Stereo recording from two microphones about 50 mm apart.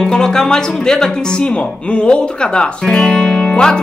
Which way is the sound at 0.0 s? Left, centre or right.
Centre.